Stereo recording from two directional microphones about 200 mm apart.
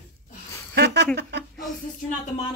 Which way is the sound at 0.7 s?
55° right (ahead or behind).